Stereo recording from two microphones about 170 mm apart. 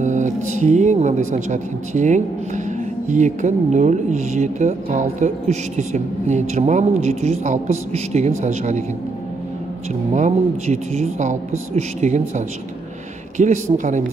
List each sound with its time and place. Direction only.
0.0 s speech: 45° right (ahead or behind)
10.1 s speech: 45° right (ahead or behind)